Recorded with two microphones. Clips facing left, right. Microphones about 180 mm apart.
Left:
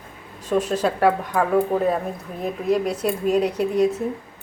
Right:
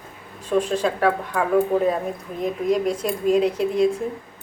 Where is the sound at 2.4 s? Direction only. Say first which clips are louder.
Right 1 dB; 10° left (ahead or behind).